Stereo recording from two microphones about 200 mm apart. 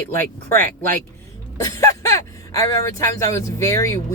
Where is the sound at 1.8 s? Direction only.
15° left (ahead or behind).